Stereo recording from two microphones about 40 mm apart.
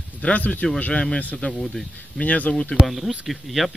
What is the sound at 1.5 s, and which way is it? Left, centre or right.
Speech, centre.